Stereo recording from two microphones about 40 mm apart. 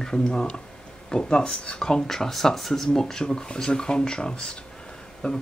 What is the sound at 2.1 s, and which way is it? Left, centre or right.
Speech, centre.